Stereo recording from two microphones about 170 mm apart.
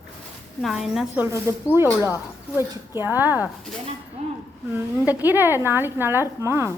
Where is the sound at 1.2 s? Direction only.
15° right (ahead or behind).